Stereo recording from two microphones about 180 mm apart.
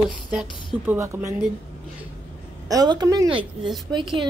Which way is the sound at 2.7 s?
20° right (ahead or behind).